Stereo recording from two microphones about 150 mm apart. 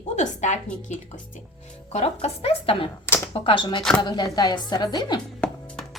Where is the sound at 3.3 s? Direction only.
35° left (ahead or behind).